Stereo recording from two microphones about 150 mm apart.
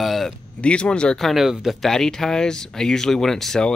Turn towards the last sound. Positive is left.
turn(degrees=5)  # may be behind; listen again after turning